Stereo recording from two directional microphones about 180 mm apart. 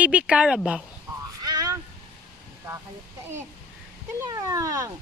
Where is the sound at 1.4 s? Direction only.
20° right (ahead or behind).